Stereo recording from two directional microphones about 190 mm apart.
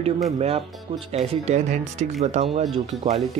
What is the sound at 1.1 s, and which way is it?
Speech, 35° right (ahead or behind).